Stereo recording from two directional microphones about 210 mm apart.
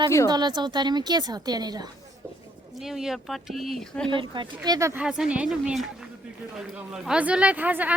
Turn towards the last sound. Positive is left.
turn(degrees=-10)  # may be behind; listen again after turning